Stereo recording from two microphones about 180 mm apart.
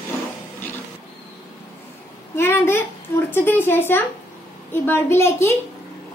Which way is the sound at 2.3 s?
15° left (ahead or behind).